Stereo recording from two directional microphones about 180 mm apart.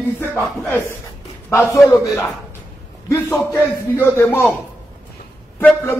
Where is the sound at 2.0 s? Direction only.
15° left (ahead or behind).